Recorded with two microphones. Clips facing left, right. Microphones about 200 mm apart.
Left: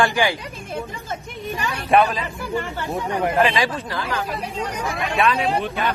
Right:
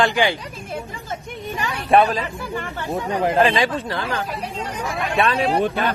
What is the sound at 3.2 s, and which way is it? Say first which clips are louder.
Speech: right 2 dB; 30° right (ahead or behind).